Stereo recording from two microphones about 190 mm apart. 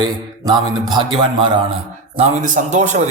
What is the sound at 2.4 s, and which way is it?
Speech, 40° right (ahead or behind).